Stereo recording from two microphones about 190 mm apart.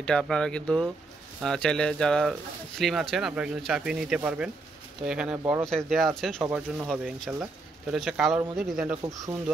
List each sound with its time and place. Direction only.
0.0 s speech: 5° left (ahead or behind); by 5.7 s 15° right (ahead or behind)
5.9 s speech: centre (ahead or behind)
6.4 s speech: 10° right (ahead or behind)
9.0 s speech: 20° right (ahead or behind)